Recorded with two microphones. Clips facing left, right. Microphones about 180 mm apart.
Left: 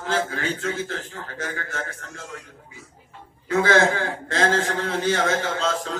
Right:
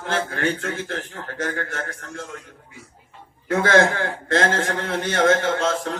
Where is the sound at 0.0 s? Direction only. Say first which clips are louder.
Right 1 dB; 55° right (ahead or behind).